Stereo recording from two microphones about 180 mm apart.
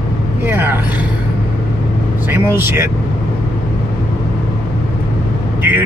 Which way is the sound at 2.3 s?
10° right (ahead or behind).